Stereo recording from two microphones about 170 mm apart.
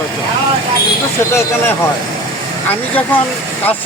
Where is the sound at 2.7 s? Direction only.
10° left (ahead or behind).